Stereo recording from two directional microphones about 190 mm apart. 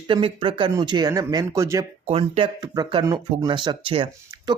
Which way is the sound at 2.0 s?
30° right (ahead or behind).